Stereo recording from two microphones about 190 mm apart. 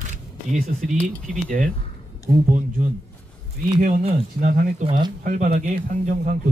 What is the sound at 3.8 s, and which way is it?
Speech, 40° right (ahead or behind).